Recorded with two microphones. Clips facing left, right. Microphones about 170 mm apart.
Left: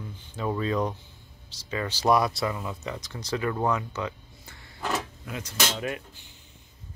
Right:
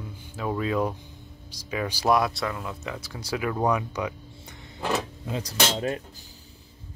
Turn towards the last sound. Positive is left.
turn(degrees=-30)  # may be behind; listen again after turning